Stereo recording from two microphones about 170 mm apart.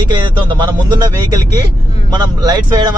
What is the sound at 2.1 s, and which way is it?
Speech, 25° right (ahead or behind).